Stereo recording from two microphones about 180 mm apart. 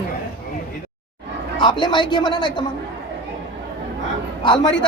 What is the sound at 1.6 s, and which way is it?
Speech, 25° left (ahead or behind).